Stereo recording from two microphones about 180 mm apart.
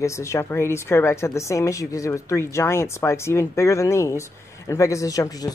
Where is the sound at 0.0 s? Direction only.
15° left (ahead or behind).